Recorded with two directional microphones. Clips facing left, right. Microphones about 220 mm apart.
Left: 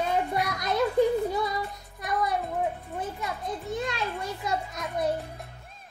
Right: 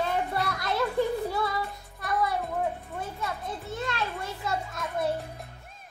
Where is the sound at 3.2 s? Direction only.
15° left (ahead or behind).